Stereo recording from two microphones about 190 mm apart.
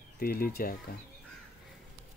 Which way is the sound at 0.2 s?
50° left (ahead or behind).